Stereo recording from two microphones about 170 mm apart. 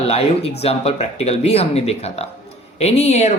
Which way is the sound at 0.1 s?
35° left (ahead or behind).